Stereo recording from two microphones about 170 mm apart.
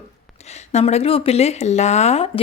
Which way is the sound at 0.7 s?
40° left (ahead or behind).